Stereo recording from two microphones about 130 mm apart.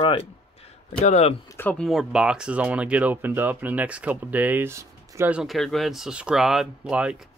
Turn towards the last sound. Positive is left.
turn(degrees=-5)  # may be behind; listen again after turning